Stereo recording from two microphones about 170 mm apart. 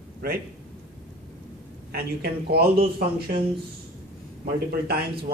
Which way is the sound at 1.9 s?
65° right (ahead or behind).